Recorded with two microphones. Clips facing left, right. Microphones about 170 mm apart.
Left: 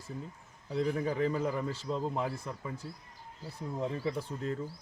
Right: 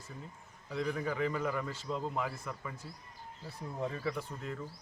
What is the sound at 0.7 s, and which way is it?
Speech, 35° left (ahead or behind).